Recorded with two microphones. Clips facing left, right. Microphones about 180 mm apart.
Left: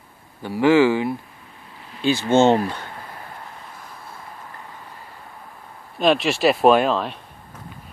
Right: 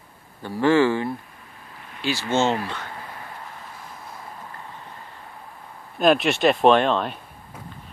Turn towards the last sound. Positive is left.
turn(degrees=0)  # may be behind; listen again after turning